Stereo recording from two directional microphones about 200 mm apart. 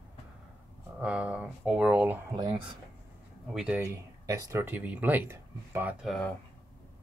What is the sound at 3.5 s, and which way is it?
Speech, 5° right (ahead or behind).